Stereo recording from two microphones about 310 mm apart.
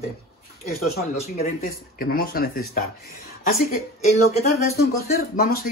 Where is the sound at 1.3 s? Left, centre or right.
Left.